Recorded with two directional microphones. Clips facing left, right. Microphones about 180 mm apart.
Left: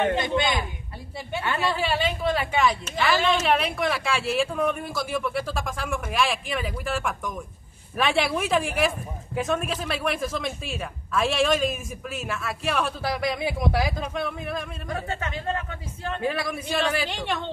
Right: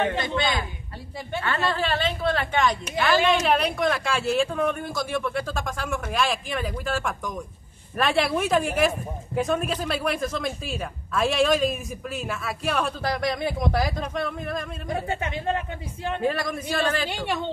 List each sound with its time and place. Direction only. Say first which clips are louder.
0.1 s a woman's voice: left 2 dB; 20° left (ahead or behind)
14.9 s speech: right 3 dB; 20° right (ahead or behind)
16.2 s a woman's voice: right 1 dB; 5° left (ahead or behind)
17.1 s speech: right 1 dB; 5° right (ahead or behind)